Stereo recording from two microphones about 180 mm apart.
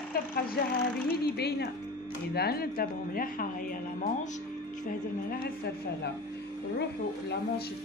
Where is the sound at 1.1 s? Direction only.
65° left (ahead or behind).